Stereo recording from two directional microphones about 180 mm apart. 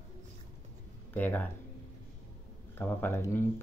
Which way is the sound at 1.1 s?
10° left (ahead or behind).